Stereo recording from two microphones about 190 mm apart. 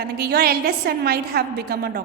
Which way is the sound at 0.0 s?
55° right (ahead or behind).